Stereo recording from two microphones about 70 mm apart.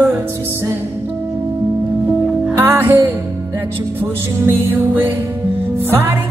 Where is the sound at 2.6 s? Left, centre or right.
Right.